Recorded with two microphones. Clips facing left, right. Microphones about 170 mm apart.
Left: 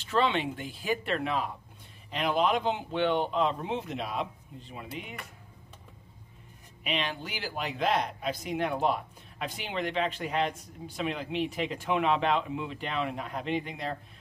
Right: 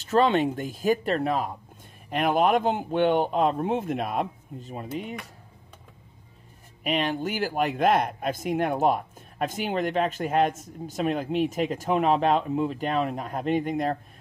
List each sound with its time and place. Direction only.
0.0 s speech: 45° right (ahead or behind)
6.8 s speech: 45° right (ahead or behind)